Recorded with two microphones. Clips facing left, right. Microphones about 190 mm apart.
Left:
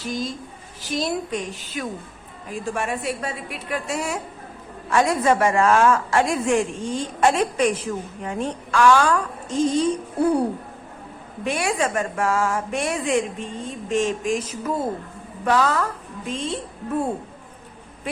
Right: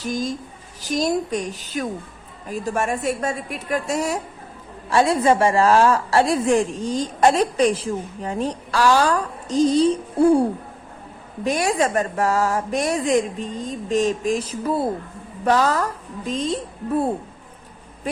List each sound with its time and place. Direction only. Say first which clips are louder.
0.0 s a woman's voice: right 3 dB; 45° right (ahead or behind)
11.4 s a woman's voice: right 3 dB; 40° right (ahead or behind)